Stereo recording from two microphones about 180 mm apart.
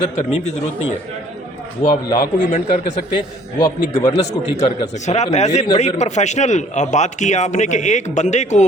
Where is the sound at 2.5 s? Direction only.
40° left (ahead or behind).